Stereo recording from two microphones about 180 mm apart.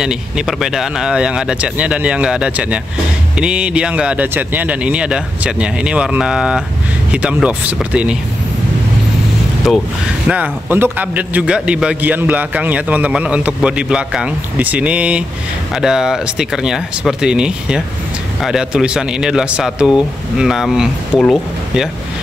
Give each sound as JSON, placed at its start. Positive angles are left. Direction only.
{"t": 0.0, "sound": "a man's voice", "side_deg": -5}
{"t": 10.2, "sound": "a man's voice", "side_deg": -10}